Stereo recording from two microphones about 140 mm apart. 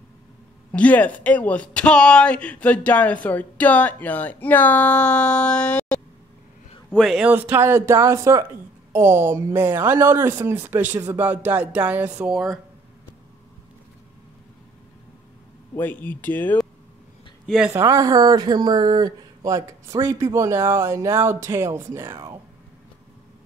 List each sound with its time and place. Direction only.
0.7 s speech: 10° left (ahead or behind)
6.9 s a man's voice: 5° right (ahead or behind)
7.2 s a woman's voice: 15° right (ahead or behind)
15.7 s speech: 15° left (ahead or behind)
17.5 s a man's voice: 5° right (ahead or behind)
17.7 s speech: 25° right (ahead or behind)